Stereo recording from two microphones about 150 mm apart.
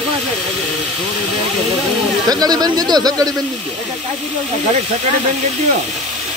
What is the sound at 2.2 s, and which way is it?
Speech, 25° right (ahead or behind).